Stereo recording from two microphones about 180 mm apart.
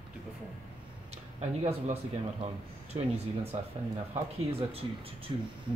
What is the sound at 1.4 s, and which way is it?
Speech, 35° right (ahead or behind).